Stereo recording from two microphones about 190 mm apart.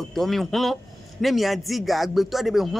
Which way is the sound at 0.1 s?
Centre (ahead or behind).